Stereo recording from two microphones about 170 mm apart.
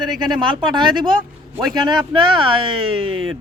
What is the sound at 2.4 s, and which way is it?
Speech, 30° right (ahead or behind).